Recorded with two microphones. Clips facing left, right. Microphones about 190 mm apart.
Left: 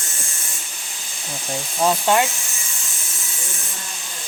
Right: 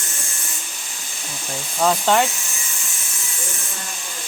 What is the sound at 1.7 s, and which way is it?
Speech, 10° left (ahead or behind).